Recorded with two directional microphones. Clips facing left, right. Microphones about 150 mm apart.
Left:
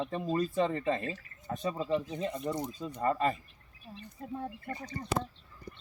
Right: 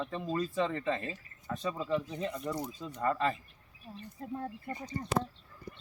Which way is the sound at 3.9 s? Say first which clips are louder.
Right 1 dB; centre (ahead or behind).